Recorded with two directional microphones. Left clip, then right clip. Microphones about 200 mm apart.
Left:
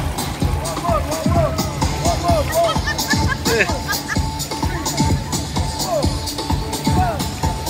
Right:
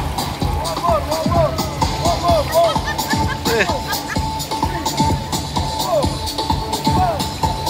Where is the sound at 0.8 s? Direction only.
35° right (ahead or behind).